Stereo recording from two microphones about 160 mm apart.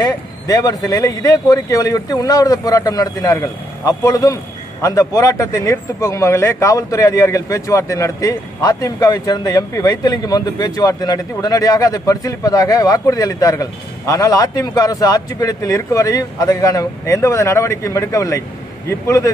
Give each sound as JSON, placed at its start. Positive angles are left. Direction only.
{"t": 0.0, "sound": "a man's voice", "side_deg": 25}